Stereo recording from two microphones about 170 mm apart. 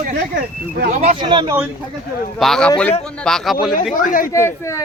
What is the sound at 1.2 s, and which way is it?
Speech, 25° right (ahead or behind).